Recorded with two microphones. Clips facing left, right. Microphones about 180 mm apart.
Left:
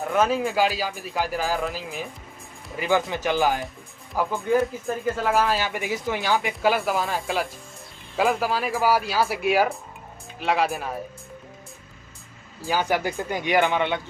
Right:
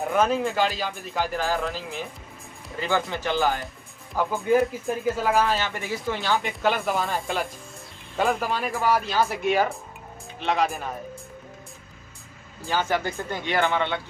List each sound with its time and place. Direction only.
0.0 s speech: centre (ahead or behind)
2.8 s speech: 15° left (ahead or behind)
4.1 s speech: centre (ahead or behind)
5.7 s speech: 15° left (ahead or behind)
12.6 s speech: 10° left (ahead or behind)